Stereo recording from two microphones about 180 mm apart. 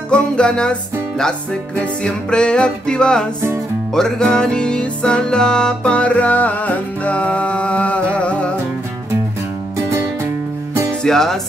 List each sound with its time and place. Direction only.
0.1 s music: 5° left (ahead or behind)
10.7 s music: 15° right (ahead or behind)
11.0 s music: centre (ahead or behind)